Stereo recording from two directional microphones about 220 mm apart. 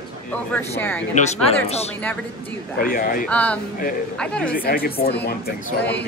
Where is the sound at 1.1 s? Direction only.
30° left (ahead or behind).